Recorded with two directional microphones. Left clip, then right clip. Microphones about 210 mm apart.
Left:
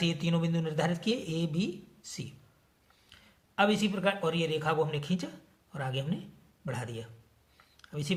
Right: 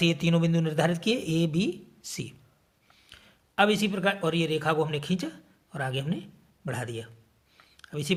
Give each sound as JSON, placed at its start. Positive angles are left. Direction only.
{"t": 0.0, "sound": "speech", "side_deg": -45}
{"t": 3.1, "sound": "a man's voice", "side_deg": -40}
{"t": 7.5, "sound": "a sound", "side_deg": -45}